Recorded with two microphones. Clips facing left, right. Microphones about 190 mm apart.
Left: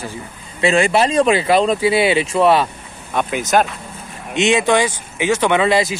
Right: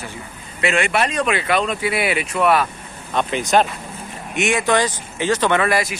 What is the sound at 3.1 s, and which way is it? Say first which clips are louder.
Speech: left 1 dB; 5° left (ahead or behind).